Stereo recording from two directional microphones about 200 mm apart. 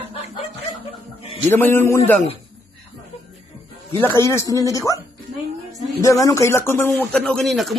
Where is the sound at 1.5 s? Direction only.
10° left (ahead or behind).